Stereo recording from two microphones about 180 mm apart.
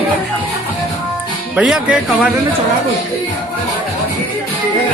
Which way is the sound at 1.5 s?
5° right (ahead or behind).